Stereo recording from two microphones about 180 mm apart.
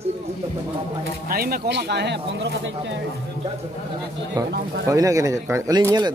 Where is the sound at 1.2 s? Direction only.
55° right (ahead or behind); by 2.7 s 75° right (ahead or behind).